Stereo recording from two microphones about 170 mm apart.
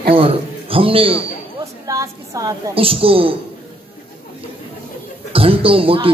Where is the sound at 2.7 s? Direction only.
35° right (ahead or behind).